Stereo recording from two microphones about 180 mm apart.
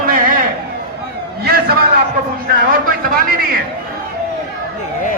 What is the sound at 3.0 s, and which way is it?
Speech, 55° right (ahead or behind).